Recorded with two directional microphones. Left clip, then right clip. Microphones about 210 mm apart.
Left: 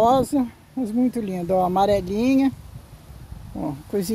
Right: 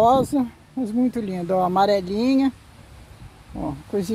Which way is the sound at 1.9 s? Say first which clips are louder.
Even; 20° left (ahead or behind).